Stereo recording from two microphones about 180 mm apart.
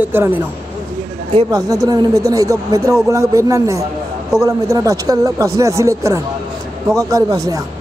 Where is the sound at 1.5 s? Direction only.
20° right (ahead or behind).